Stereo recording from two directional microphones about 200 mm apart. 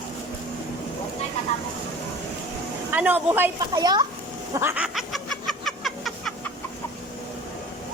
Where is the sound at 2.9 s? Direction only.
10° right (ahead or behind).